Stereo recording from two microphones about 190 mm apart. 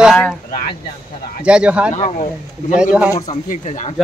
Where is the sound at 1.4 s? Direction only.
5° right (ahead or behind).